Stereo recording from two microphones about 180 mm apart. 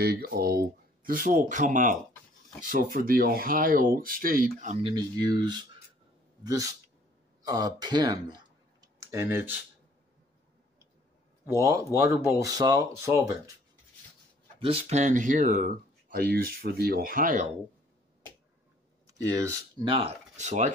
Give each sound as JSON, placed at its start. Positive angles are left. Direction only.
{"t": 0.0, "sound": "speech", "side_deg": -60}
{"t": 4.8, "sound": "speech", "side_deg": -20}
{"t": 11.4, "sound": "speech", "side_deg": -15}
{"t": 14.6, "sound": "speech", "side_deg": -35}
{"t": 15.6, "sound": "speech", "side_deg": -55}
{"t": 19.0, "sound": "speech", "side_deg": -20}